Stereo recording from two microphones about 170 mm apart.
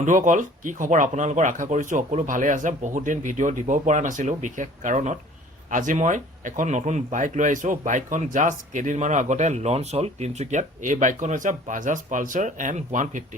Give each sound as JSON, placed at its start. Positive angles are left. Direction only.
{"t": 0.0, "sound": "speech", "side_deg": -50}